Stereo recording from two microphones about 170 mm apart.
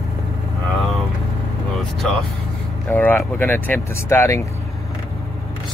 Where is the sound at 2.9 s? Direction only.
10° left (ahead or behind).